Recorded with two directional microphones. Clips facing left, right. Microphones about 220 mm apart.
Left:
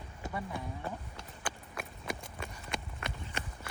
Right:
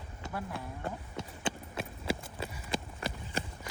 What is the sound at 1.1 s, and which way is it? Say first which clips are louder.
Clip-clop: right 6 dB; 25° right (ahead or behind).